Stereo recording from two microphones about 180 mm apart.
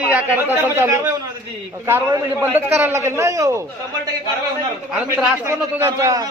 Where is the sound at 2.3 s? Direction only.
10° right (ahead or behind).